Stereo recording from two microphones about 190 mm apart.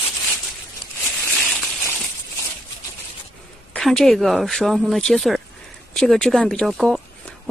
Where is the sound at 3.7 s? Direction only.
5° left (ahead or behind).